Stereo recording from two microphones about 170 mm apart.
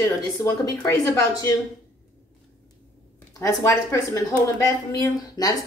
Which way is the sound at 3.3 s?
20° left (ahead or behind).